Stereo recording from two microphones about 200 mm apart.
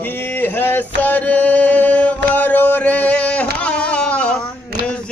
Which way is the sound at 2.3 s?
10° left (ahead or behind).